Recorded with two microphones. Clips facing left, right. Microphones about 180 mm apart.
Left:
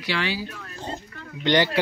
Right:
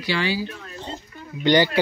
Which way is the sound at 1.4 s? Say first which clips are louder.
Right 3 dB; centre (ahead or behind).